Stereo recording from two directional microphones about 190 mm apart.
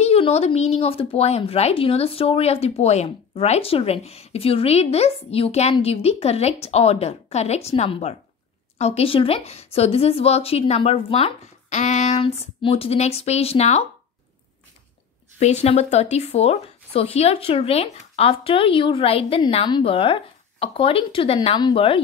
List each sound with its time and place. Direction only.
0.0 s speech: 35° left (ahead or behind)
15.3 s speech: 35° left (ahead or behind)